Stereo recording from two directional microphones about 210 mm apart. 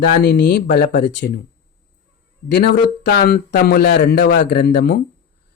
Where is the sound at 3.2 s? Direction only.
45° left (ahead or behind).